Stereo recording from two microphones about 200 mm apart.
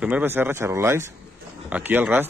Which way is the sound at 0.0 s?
10° right (ahead or behind).